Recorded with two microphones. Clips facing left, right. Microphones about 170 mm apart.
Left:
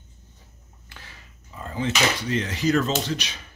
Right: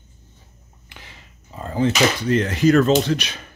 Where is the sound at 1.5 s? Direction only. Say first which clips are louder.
Right 7 dB; 35° right (ahead or behind); by 3.4 s 55° right (ahead or behind).